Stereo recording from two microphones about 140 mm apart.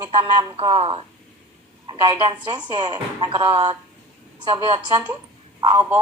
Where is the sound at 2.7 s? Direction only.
30° right (ahead or behind).